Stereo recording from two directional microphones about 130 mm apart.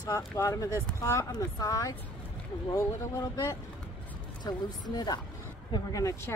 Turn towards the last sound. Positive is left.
turn(degrees=35)  # may be behind; listen again after turning